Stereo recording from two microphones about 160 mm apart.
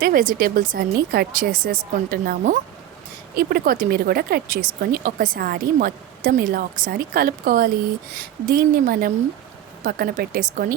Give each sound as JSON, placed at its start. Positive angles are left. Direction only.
{"t": 0.0, "sound": "speech", "side_deg": -60}